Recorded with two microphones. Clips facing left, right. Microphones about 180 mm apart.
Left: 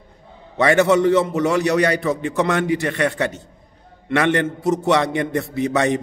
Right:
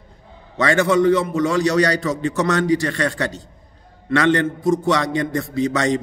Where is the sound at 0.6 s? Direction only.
20° left (ahead or behind).